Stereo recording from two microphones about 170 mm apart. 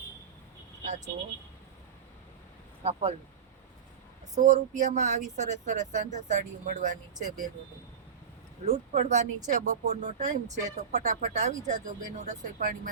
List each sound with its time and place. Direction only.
0.9 s speech: 45° right (ahead or behind)
2.8 s speech: 40° right (ahead or behind)
4.4 s speech: 45° right (ahead or behind)
8.6 s speech: 40° right (ahead or behind)